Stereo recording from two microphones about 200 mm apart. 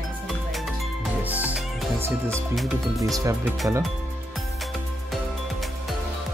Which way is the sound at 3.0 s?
15° right (ahead or behind).